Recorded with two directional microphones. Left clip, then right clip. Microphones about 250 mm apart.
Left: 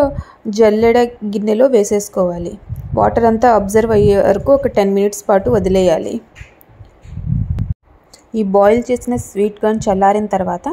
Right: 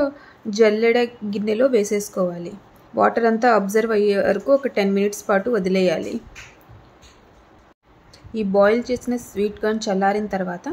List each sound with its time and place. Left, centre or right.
0.0 s a woman's voice: centre
8.3 s speech: centre